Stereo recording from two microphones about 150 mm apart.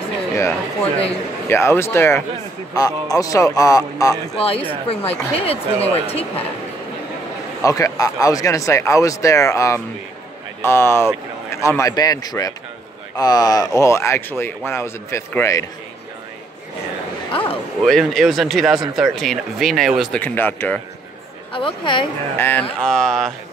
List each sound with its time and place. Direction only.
0.4 s a man's voice: 15° left (ahead or behind)
4.4 s speech: 40° left (ahead or behind)
7.6 s a man's voice: 25° left (ahead or behind)
17.8 s a man's voice: centre (ahead or behind)
21.5 s speech: 35° left (ahead or behind)
22.4 s speech: 10° left (ahead or behind)